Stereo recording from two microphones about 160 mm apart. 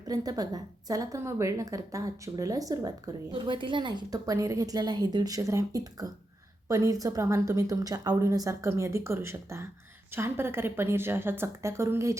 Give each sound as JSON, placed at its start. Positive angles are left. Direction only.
{"t": 0.1, "sound": "a woman's voice", "side_deg": -25}